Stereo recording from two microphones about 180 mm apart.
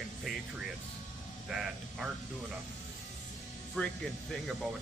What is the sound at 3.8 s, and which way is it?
Speech, 5° left (ahead or behind).